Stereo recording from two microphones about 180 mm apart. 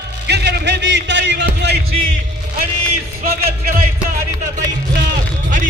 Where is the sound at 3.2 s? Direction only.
60° right (ahead or behind).